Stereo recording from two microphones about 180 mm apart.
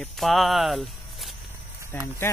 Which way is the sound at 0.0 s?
Centre (ahead or behind).